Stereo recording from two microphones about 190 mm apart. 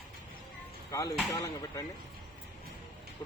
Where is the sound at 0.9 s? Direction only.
15° left (ahead or behind).